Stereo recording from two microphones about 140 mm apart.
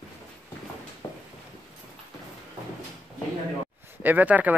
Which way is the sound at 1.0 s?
30° left (ahead or behind).